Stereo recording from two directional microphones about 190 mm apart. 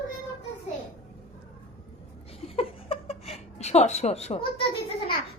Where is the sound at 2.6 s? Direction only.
30° left (ahead or behind).